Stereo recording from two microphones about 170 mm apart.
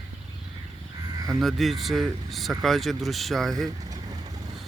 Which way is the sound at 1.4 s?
Centre (ahead or behind).